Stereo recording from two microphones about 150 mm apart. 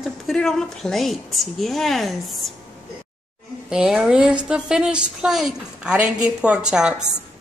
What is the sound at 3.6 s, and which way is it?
A woman's voice, 5° right (ahead or behind).